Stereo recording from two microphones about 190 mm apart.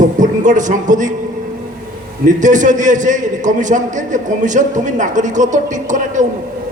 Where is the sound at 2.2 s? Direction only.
40° right (ahead or behind).